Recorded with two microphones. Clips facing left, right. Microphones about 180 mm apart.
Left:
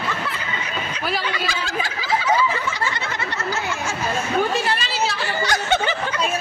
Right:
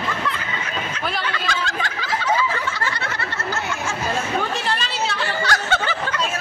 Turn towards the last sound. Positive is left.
turn(degrees=15)  # may be behind; listen again after turning